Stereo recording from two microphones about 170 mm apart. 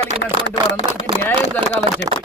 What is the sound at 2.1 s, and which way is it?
Speech, 20° right (ahead or behind).